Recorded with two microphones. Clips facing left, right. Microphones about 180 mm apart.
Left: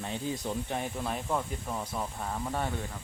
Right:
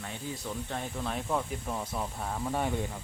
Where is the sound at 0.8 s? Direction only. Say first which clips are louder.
Left 1 dB; 10° left (ahead or behind).